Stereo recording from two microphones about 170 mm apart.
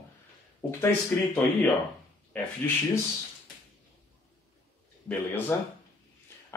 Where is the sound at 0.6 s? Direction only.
15° left (ahead or behind).